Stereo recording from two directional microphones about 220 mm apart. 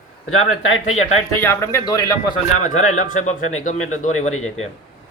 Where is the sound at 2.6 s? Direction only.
70° left (ahead or behind).